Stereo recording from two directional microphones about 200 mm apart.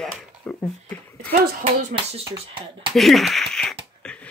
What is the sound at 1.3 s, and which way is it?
Speech, 50° right (ahead or behind).